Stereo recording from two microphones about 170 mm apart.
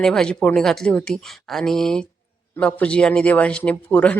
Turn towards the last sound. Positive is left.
turn(degrees=5)  # may be behind; listen again after turning